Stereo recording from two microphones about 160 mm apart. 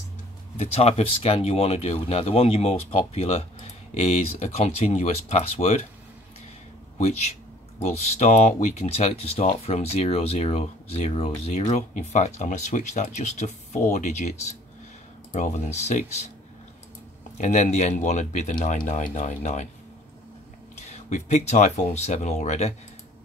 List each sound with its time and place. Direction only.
0.6 s speech: 40° left (ahead or behind)
7.8 s speech: 45° left (ahead or behind)
17.4 s speech: 45° left (ahead or behind)
20.8 s speech: 45° left (ahead or behind)